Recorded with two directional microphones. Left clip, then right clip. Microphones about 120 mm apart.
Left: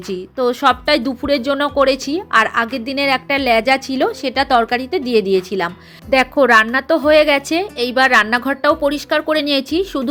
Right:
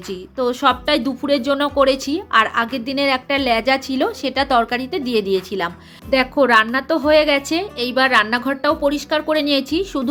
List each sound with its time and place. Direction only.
0.1 s a woman's voice: 40° left (ahead or behind)
6.1 s a woman's voice: 45° left (ahead or behind)